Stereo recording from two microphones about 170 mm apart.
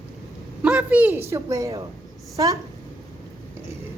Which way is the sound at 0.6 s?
10° right (ahead or behind).